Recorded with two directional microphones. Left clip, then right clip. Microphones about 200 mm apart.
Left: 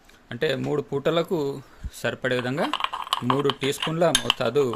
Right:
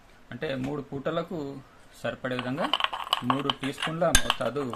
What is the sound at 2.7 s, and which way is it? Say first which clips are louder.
Speech: left 1 dB; 5° right (ahead or behind).